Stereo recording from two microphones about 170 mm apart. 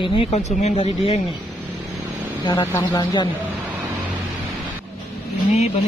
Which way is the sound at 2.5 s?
20° left (ahead or behind).